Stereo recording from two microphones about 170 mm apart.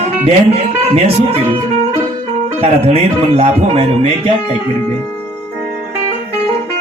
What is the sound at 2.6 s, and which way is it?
Speech, 35° right (ahead or behind).